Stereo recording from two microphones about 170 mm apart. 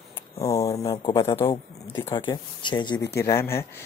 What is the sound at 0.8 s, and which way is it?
Speech, 30° left (ahead or behind).